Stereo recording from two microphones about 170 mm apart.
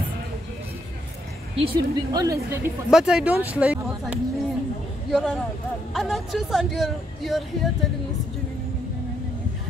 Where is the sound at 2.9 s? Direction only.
5° right (ahead or behind).